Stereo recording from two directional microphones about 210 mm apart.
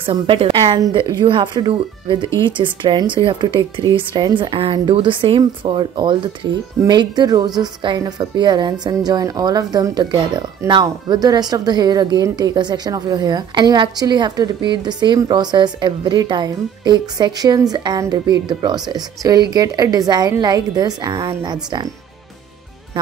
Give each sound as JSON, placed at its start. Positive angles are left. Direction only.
{"t": 0.0, "sound": "a woman's voice", "side_deg": -25}